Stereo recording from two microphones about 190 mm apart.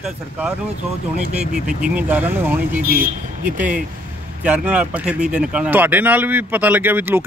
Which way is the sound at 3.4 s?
10° right (ahead or behind).